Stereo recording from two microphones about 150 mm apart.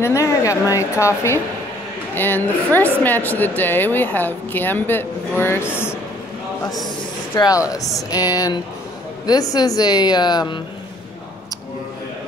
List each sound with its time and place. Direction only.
0.0 s a woman's voice: 20° left (ahead or behind)
7.3 s speech: 25° left (ahead or behind)